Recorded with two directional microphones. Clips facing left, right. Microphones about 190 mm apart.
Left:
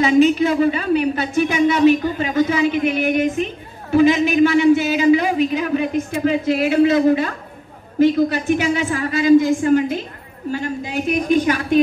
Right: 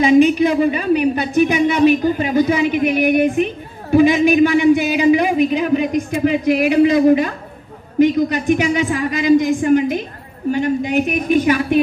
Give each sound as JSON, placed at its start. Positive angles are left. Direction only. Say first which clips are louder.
{"t": 0.0, "sound": "speech", "louder": "right 2 dB", "side_deg": -15}
{"t": 3.9, "sound": "a sound", "louder": "right 2 dB", "side_deg": -15}
{"t": 8.0, "sound": "a woman's voice", "louder": "right 1 dB", "side_deg": -15}